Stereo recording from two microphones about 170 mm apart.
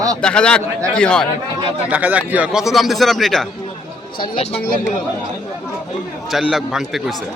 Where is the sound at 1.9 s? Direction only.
10° right (ahead or behind).